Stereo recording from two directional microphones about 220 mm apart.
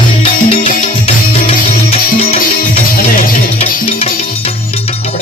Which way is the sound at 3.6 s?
25° left (ahead or behind).